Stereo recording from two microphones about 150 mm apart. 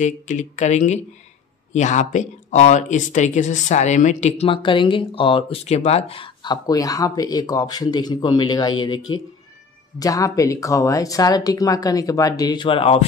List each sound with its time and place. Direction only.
0.0 s speech: 55° left (ahead or behind)
4.5 s speech: 35° left (ahead or behind)